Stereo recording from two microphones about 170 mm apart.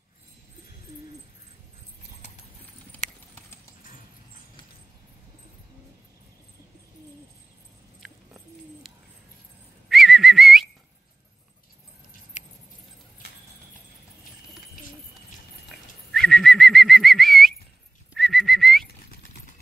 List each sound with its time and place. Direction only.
8.8 s bird: centre (ahead or behind)
9.8 s whistling: centre (ahead or behind)
12.4 s keys jangling: 45° left (ahead or behind)
15.7 s bird: 5° left (ahead or behind)
18.1 s whistling: centre (ahead or behind)